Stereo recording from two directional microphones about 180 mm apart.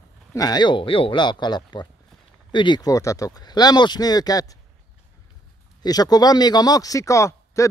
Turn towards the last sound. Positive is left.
turn(degrees=15)  # may be behind; listen again after turning